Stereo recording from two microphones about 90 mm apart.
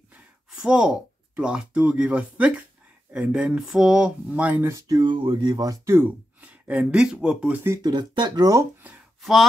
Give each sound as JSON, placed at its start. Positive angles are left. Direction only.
{"t": 0.6, "sound": "speech", "side_deg": -10}
{"t": 4.6, "sound": "speech", "side_deg": -40}
{"t": 5.0, "sound": "speech", "side_deg": -65}
{"t": 5.9, "sound": "speech", "side_deg": -20}
{"t": 7.8, "sound": "speech", "side_deg": -55}
{"t": 9.2, "sound": "speech", "side_deg": 0}